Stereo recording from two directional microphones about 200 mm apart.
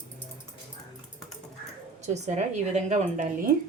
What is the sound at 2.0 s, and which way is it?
Speech, 35° right (ahead or behind).